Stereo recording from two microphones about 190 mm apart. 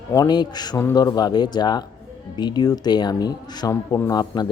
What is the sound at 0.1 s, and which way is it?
Speech, 20° left (ahead or behind).